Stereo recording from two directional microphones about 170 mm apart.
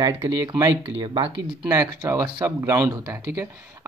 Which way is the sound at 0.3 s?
20° right (ahead or behind).